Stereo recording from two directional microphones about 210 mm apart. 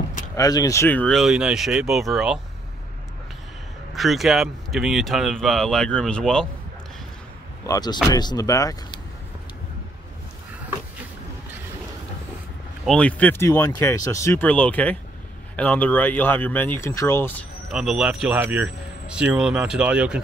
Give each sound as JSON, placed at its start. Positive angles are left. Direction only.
{"t": 0.4, "sound": "speech", "side_deg": 15}
{"t": 3.9, "sound": "speech", "side_deg": 0}
{"t": 7.6, "sound": "speech", "side_deg": 15}
{"t": 12.8, "sound": "speech", "side_deg": 5}
{"t": 17.6, "sound": "speech", "side_deg": 0}